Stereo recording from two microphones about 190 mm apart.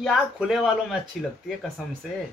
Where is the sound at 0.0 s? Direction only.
5° right (ahead or behind).